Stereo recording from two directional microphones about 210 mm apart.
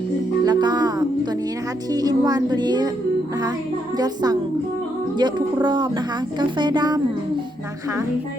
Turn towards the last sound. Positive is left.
turn(degrees=-20)  # may be behind; listen again after turning